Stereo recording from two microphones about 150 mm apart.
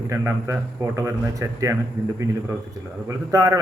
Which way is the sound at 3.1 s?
20° right (ahead or behind).